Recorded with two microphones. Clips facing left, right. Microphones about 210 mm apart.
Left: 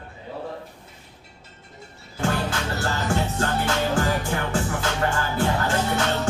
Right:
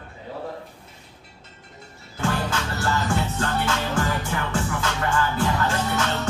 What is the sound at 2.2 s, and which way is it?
Music, 35° left (ahead or behind).